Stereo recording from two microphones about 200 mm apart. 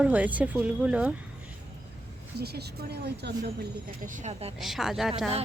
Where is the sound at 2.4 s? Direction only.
55° right (ahead or behind).